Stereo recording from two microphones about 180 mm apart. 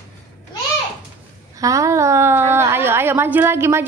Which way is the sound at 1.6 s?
15° right (ahead or behind).